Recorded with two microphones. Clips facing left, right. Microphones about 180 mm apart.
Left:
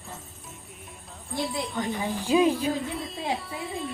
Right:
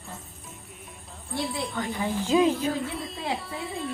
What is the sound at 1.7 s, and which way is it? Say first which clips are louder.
Speech: right 1 dB; 15° left (ahead or behind).